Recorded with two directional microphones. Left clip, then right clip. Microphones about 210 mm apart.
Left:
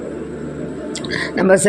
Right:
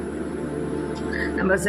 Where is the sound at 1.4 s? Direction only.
30° left (ahead or behind).